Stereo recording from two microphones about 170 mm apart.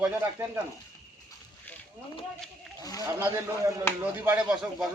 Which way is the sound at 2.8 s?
20° left (ahead or behind).